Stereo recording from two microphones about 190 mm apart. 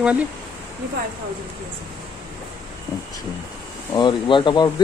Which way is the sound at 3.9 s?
25° left (ahead or behind).